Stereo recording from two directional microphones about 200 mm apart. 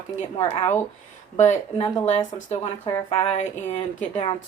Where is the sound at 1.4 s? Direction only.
35° left (ahead or behind).